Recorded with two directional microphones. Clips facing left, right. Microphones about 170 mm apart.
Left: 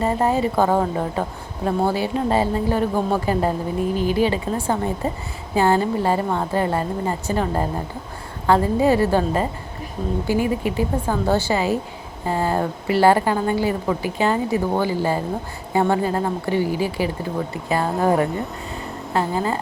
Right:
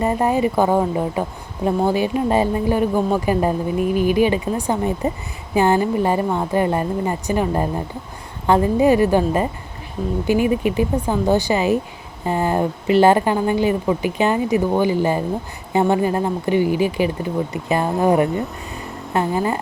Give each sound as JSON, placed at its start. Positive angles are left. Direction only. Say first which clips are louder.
{"t": 0.0, "sound": "a woman's voice", "louder": "right 2 dB", "side_deg": -15}